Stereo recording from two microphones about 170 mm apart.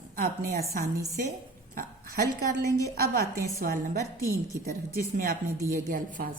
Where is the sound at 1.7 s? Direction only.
55° right (ahead or behind).